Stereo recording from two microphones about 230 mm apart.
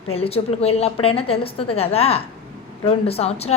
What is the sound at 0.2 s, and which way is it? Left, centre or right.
A woman's voice, left.